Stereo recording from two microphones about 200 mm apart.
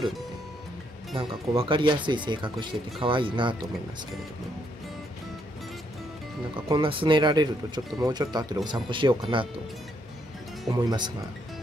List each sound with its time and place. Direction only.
1.1 s speech: 30° right (ahead or behind)
6.5 s speech: 25° right (ahead or behind)
10.8 s speech: 20° right (ahead or behind)